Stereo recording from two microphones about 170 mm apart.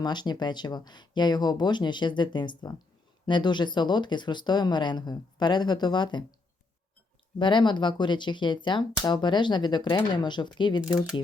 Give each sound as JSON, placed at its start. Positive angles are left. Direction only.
{"t": 0.0, "sound": "speech", "side_deg": 25}
{"t": 7.3, "sound": "speech", "side_deg": 30}